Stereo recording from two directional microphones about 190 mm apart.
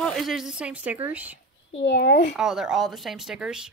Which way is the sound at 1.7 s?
70° left (ahead or behind).